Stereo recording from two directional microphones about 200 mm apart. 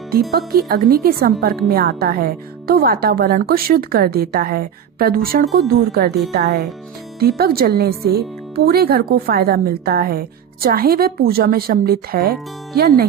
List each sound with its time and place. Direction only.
0.7 s speech: 50° right (ahead or behind)